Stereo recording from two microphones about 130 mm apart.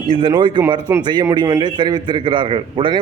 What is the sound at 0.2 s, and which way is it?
A man's voice, 40° right (ahead or behind).